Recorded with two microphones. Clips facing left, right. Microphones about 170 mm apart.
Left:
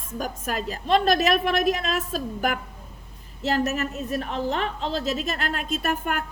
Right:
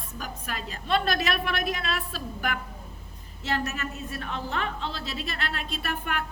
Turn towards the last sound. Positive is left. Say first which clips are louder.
# left 5 dB
turn(degrees=45)  # may be behind; listen again after turning